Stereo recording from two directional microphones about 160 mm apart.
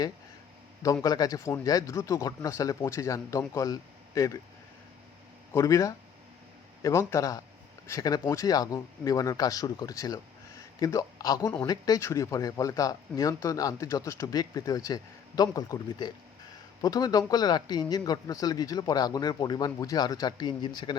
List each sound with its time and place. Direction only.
1.0 s speech: 25° left (ahead or behind)
5.5 s a man's voice: 20° left (ahead or behind)